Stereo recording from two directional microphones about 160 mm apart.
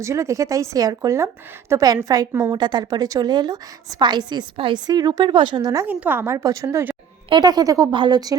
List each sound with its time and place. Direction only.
0.0 s a woman's voice: 20° right (ahead or behind)
5.8 s a woman's voice: 10° right (ahead or behind)
7.3 s a woman's voice: 25° right (ahead or behind)